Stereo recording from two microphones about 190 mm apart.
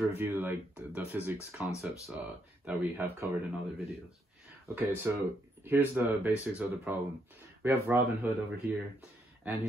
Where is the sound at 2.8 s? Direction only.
10° right (ahead or behind).